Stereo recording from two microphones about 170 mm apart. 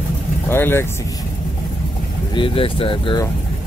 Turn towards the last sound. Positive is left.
turn(degrees=30)  # may be behind; listen again after turning